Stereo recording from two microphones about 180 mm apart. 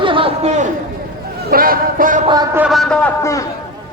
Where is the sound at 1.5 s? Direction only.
55° right (ahead or behind).